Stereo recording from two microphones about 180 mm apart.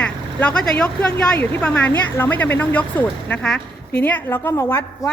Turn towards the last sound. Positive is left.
turn(degrees=15)  # may be behind; listen again after turning